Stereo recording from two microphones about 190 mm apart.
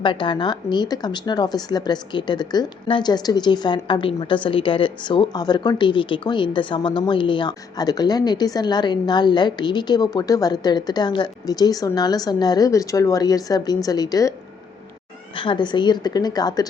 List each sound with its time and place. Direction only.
0.0 s speech: 25° left (ahead or behind)
15.4 s speech: 25° left (ahead or behind)